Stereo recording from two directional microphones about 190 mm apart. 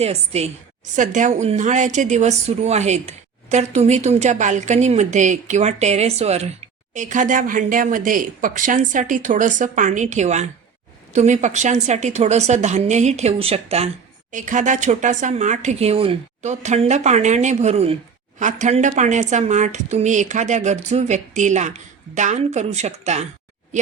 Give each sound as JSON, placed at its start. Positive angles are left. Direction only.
{"t": 0.0, "sound": "a woman's voice", "side_deg": -35}